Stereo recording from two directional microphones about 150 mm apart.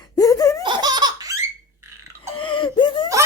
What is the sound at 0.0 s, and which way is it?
Laughter, 25° left (ahead or behind).